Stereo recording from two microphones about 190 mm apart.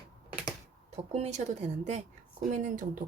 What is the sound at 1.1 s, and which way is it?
Speech, 35° right (ahead or behind).